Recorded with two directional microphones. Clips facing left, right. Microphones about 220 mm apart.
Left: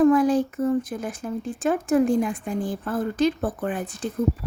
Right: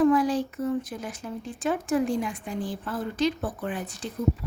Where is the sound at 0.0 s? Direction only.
50° left (ahead or behind).